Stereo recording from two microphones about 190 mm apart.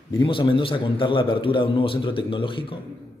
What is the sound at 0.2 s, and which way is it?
Speech, 25° left (ahead or behind).